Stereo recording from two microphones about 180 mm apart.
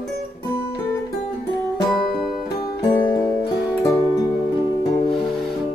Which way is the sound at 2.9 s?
25° left (ahead or behind).